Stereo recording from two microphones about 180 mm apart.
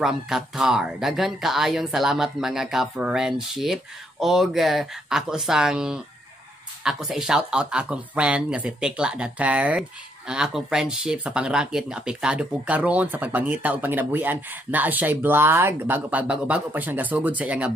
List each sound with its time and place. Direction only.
0.0 s speech: centre (ahead or behind)